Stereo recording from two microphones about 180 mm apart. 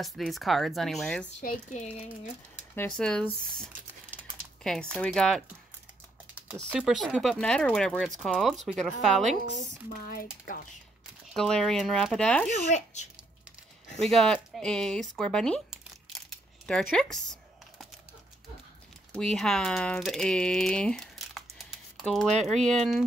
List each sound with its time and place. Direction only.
0.0 s speech: centre (ahead or behind)
1.4 s speech: 45° left (ahead or behind)
2.7 s speech: 10° left (ahead or behind)
4.9 s speech: 5° left (ahead or behind)
6.5 s speech: centre (ahead or behind)
9.5 s speech: 50° left (ahead or behind)
11.3 s speech: centre (ahead or behind)
12.4 s speech: 40° left (ahead or behind)
13.9 s a sound: centre (ahead or behind)
16.9 s speech: 5° left (ahead or behind)
19.1 s speech: 5° left (ahead or behind)